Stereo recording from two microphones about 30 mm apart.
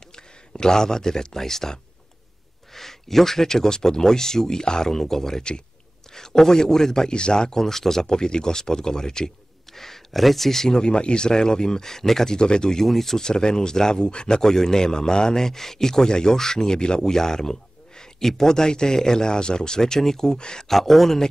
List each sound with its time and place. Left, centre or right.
0.1 s speech: left
7.1 s speech: left
7.5 s speech: centre
9.7 s speech: centre
10.8 s speech: left
11.2 s speech: left
12.4 s speech: left
12.8 s speech: centre
13.2 s speech: left
20.2 s speech: left
20.6 s speech: centre